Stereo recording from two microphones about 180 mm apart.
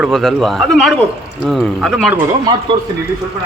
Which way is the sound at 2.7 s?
25° right (ahead or behind).